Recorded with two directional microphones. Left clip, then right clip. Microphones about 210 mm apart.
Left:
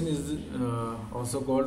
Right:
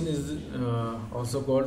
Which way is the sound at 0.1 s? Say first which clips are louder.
Even; 10° right (ahead or behind).